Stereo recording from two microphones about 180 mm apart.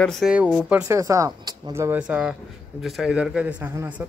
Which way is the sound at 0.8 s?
15° right (ahead or behind).